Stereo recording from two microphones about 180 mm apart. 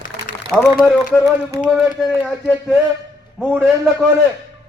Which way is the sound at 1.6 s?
5° right (ahead or behind).